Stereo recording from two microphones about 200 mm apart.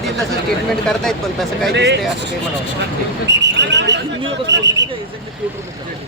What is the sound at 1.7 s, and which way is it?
Speech, 60° right (ahead or behind).